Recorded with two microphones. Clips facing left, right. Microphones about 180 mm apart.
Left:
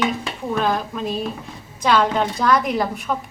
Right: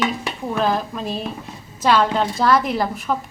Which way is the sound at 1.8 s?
5° right (ahead or behind).